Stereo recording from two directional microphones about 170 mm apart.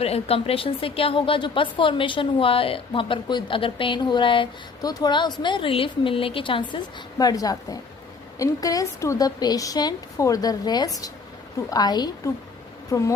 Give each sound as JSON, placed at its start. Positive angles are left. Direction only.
{"t": 0.0, "sound": "a woman's voice", "side_deg": 35}